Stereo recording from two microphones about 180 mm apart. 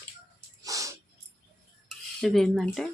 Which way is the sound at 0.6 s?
20° right (ahead or behind).